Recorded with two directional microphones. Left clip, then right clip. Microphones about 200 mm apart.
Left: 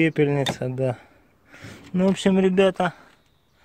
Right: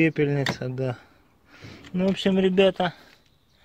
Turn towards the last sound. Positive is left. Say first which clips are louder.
# left 1 dB
turn(degrees=5)  # may be behind; listen again after turning